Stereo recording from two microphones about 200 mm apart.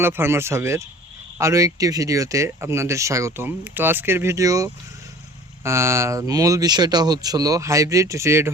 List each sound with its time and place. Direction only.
0.0 s speech: 10° right (ahead or behind)